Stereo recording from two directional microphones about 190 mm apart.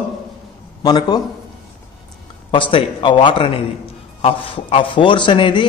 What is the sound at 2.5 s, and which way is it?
A man's voice, 25° left (ahead or behind).